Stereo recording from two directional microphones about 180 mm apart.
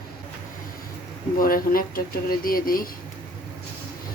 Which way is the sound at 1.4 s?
55° left (ahead or behind).